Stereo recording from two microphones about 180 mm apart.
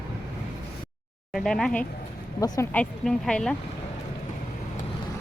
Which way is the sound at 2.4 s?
15° left (ahead or behind).